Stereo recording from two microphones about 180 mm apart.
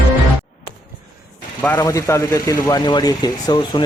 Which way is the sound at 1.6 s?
10° left (ahead or behind).